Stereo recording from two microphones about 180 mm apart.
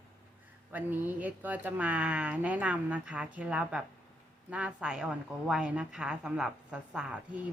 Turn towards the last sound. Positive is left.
turn(degrees=-5)  # may be behind; listen again after turning